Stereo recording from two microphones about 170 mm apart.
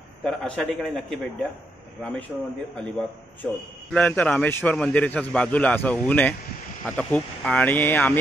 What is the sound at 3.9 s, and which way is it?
Speech, 5° left (ahead or behind).